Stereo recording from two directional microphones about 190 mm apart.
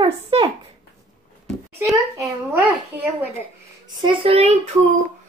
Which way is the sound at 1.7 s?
5° right (ahead or behind).